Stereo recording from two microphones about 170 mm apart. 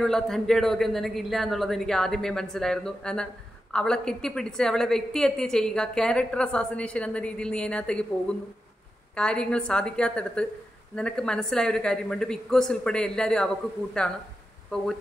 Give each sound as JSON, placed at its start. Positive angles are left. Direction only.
{"t": 0.0, "sound": "a woman's voice", "side_deg": 0}